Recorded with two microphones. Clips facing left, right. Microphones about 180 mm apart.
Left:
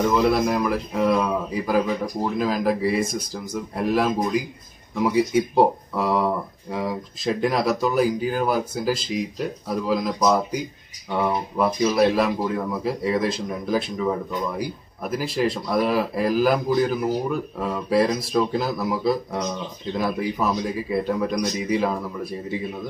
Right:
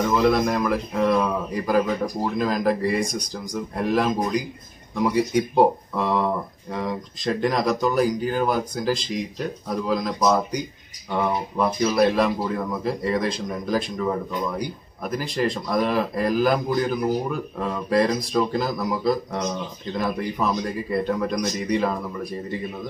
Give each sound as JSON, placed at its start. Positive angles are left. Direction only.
{"t": 0.1, "sound": "speech", "side_deg": 0}